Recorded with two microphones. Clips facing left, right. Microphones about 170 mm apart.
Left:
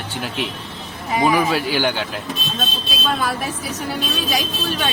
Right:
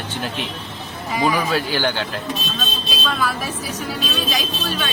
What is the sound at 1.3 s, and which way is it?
Speech, 15° left (ahead or behind).